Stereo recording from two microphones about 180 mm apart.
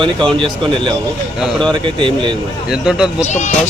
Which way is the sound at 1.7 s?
25° right (ahead or behind).